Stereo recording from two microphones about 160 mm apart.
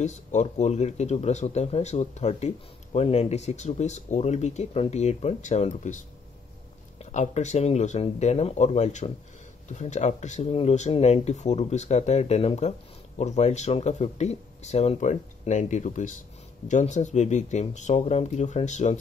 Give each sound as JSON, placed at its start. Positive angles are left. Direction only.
{"t": 0.0, "sound": "speech", "side_deg": 45}